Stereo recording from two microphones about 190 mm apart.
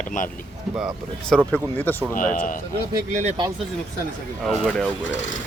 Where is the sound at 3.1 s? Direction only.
40° right (ahead or behind).